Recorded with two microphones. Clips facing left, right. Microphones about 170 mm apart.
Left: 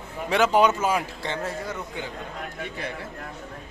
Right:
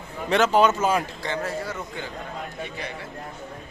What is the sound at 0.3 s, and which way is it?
Speech, 10° left (ahead or behind).